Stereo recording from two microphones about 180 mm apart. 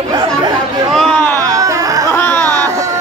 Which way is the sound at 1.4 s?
20° right (ahead or behind).